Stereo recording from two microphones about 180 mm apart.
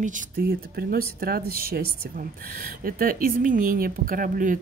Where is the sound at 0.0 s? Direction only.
50° right (ahead or behind).